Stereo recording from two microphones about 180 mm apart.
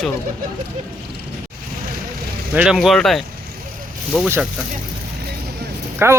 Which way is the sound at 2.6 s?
5° right (ahead or behind).